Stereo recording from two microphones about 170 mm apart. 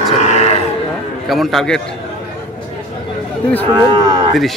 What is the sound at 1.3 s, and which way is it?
Speech, centre (ahead or behind).